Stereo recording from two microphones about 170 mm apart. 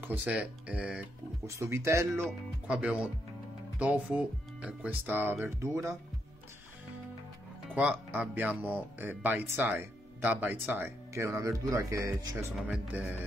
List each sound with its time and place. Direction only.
0.0 s speech: 10° right (ahead or behind)
1.4 s speech: 15° right (ahead or behind)
2.2 s speech: 5° right (ahead or behind)
7.7 s speech: 10° right (ahead or behind)
12.5 s speech: 5° right (ahead or behind)